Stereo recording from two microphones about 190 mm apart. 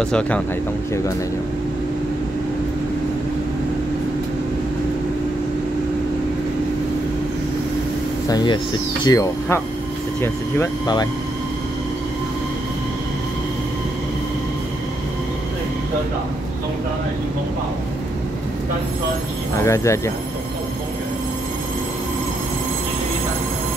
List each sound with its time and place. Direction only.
0.0 s speech: 5° left (ahead or behind)
8.3 s speech: 20° left (ahead or behind)
19.5 s speech: 15° left (ahead or behind)